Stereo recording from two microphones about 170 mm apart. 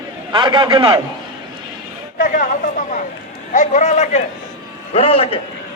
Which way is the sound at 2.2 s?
55° left (ahead or behind).